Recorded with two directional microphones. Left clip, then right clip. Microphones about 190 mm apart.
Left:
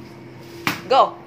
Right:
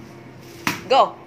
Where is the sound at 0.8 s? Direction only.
10° right (ahead or behind).